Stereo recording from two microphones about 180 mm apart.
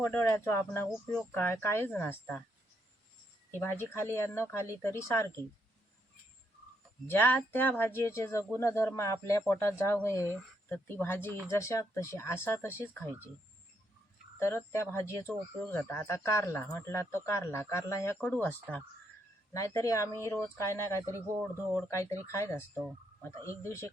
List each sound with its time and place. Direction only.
0.0 s speech: 10° left (ahead or behind)
3.6 s speech: 10° left (ahead or behind)
7.1 s speech: 10° left (ahead or behind)
14.3 s speech: 15° left (ahead or behind)